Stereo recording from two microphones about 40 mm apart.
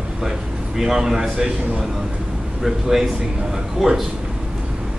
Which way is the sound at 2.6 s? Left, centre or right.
Centre.